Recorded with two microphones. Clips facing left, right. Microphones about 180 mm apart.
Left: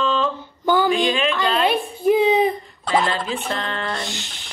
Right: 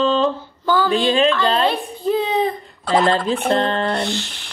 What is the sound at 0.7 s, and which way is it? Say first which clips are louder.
A child's voice: right 1 dB; 15° left (ahead or behind).